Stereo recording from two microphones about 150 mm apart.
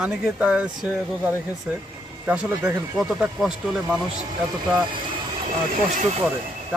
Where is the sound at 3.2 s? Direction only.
5° right (ahead or behind).